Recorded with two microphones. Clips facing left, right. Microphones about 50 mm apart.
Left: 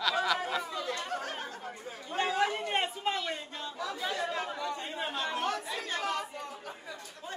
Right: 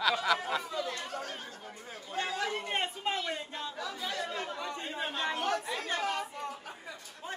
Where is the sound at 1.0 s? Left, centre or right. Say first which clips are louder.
Left 3 dB; left.